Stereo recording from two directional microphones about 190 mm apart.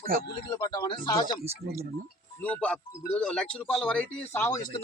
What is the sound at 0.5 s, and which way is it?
Speech, 20° left (ahead or behind).